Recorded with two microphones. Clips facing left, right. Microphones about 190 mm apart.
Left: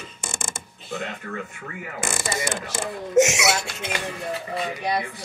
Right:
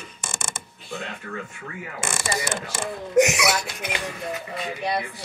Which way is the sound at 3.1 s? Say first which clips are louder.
Even; 25° left (ahead or behind).